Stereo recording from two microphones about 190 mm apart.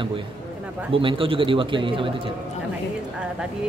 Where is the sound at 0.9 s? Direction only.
30° right (ahead or behind).